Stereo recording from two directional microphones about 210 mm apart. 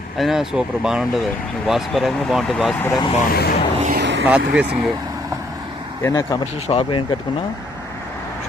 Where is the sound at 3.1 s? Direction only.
35° left (ahead or behind).